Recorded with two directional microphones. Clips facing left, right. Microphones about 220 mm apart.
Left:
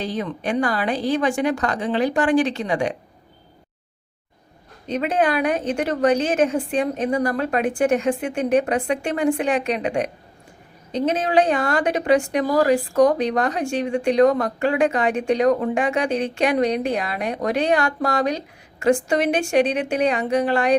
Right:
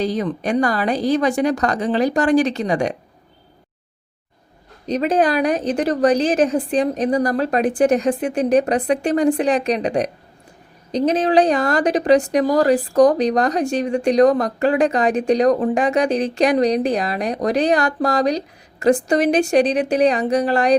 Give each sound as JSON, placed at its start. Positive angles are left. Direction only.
{"t": 0.0, "sound": "a woman's voice", "side_deg": -40}
{"t": 4.9, "sound": "a woman's voice", "side_deg": -35}